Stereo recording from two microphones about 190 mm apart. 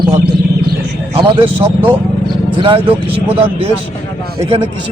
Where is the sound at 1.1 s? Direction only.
30° right (ahead or behind).